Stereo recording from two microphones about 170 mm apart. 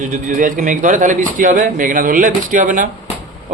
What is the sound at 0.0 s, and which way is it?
A man's voice, 45° right (ahead or behind).